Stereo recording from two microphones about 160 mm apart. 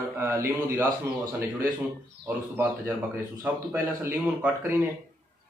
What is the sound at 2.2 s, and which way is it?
A man's voice, 10° right (ahead or behind).